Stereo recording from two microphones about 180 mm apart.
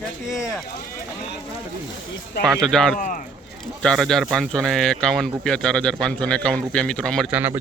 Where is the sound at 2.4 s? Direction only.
5° left (ahead or behind).